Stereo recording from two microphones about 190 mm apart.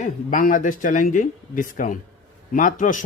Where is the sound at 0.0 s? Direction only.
45° left (ahead or behind).